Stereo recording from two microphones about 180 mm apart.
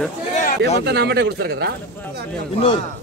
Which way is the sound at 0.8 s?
65° right (ahead or behind).